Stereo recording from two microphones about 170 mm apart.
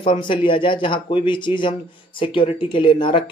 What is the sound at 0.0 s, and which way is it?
Speech, 30° left (ahead or behind).